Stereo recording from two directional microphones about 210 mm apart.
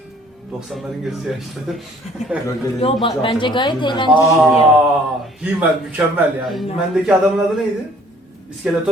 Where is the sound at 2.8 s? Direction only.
25° left (ahead or behind).